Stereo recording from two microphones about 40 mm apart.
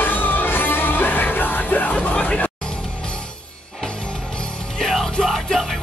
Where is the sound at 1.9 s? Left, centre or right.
Left.